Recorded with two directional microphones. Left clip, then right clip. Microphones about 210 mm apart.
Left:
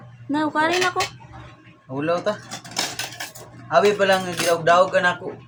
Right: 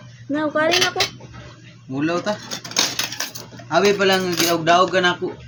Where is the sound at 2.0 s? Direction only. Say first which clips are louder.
Even; 15° left (ahead or behind).